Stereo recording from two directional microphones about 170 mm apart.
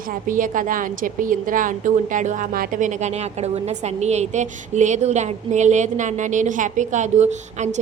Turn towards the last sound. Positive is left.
turn(degrees=-45)  # may be behind; listen again after turning